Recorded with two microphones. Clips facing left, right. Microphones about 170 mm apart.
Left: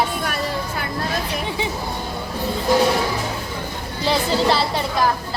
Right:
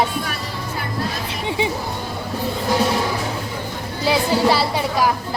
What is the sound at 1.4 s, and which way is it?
Music, 20° right (ahead or behind).